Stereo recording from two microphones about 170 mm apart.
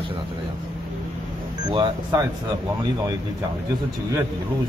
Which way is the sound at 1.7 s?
25° right (ahead or behind).